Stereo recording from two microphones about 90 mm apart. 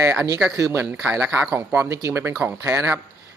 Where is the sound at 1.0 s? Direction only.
15° right (ahead or behind).